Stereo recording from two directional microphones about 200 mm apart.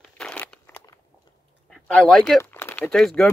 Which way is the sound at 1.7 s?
5° left (ahead or behind).